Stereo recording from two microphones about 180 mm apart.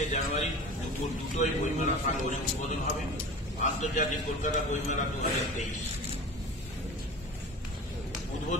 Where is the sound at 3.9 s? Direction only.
45° left (ahead or behind).